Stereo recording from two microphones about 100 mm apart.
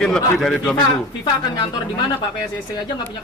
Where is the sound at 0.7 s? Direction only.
55° left (ahead or behind).